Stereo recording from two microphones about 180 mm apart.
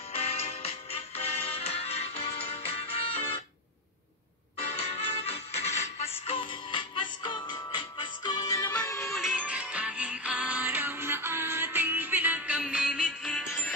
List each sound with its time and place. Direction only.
0.1 s music: 35° left (ahead or behind)
4.6 s music: 35° left (ahead or behind); by 9.0 s 15° left (ahead or behind)
9.0 s music: centre (ahead or behind)